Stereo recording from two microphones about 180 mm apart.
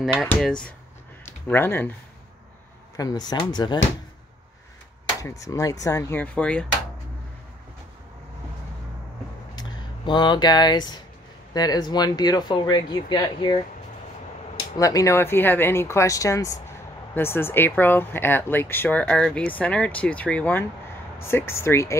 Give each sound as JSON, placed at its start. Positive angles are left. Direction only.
{"t": 0.0, "sound": "speech", "side_deg": 0}
{"t": 3.0, "sound": "speech", "side_deg": 20}
{"t": 5.2, "sound": "speech", "side_deg": 20}
{"t": 9.6, "sound": "speech", "side_deg": 25}
{"t": 14.8, "sound": "speech", "side_deg": 20}